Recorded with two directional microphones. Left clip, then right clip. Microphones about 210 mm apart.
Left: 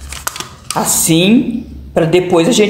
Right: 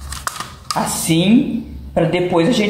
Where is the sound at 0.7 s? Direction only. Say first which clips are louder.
Left 5 dB; 60° left (ahead or behind).